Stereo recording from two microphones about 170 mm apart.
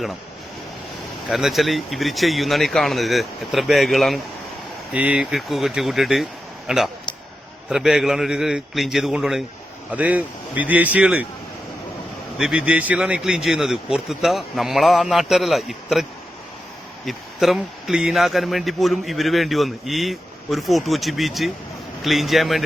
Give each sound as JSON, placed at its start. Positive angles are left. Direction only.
{"t": 1.3, "sound": "a man's voice", "side_deg": 0}
{"t": 12.4, "sound": "a man's voice", "side_deg": -5}
{"t": 17.1, "sound": "a man's voice", "side_deg": 0}